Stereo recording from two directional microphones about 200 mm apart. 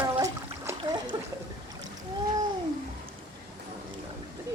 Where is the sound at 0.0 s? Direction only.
15° right (ahead or behind).